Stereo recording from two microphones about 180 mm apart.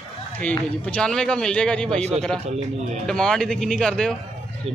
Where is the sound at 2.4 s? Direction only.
35° right (ahead or behind).